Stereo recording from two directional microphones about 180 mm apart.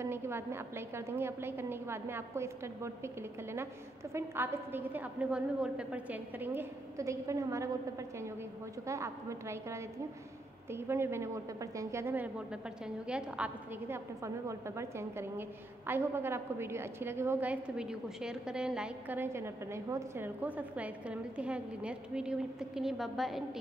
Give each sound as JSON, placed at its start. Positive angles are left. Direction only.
{"t": 0.0, "sound": "a woman's voice", "side_deg": -15}
{"t": 8.8, "sound": "a woman's voice", "side_deg": -15}